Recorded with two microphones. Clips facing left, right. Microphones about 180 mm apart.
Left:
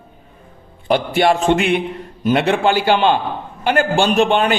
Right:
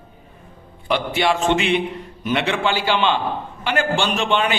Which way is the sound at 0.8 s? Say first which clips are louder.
Left 5 dB; 45° left (ahead or behind).